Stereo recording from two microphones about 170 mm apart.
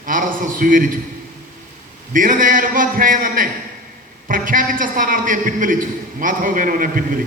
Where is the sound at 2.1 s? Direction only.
50° right (ahead or behind).